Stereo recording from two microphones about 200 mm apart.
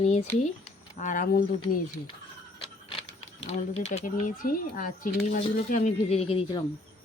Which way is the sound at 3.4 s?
30° left (ahead or behind).